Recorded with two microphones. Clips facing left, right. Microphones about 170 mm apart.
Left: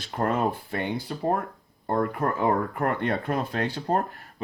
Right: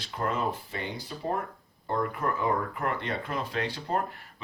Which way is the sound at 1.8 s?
45° left (ahead or behind).